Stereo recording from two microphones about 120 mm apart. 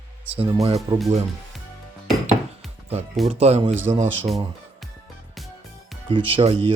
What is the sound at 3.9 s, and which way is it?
Speech, 50° right (ahead or behind).